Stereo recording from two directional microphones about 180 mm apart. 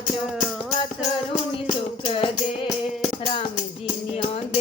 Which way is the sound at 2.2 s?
30° left (ahead or behind).